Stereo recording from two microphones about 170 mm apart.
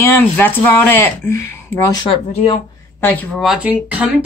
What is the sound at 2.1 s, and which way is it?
Speech, 35° left (ahead or behind).